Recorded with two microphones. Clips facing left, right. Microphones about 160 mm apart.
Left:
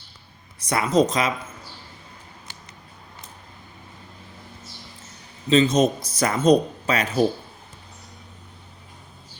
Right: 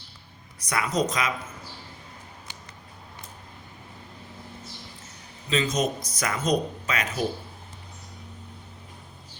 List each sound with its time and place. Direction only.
0.6 s speech: 25° left (ahead or behind)
5.5 s speech: 30° left (ahead or behind)